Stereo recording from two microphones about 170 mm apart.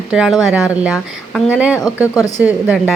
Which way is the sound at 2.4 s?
5° right (ahead or behind).